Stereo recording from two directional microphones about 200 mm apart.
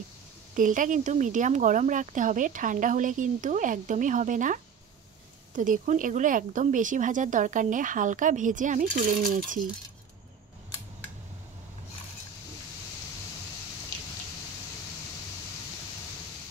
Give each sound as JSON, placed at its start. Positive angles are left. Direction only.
{"t": 0.6, "sound": "speech", "side_deg": -40}
{"t": 5.6, "sound": "speech", "side_deg": -40}